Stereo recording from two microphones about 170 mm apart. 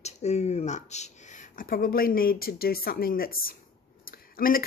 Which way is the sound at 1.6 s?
60° left (ahead or behind).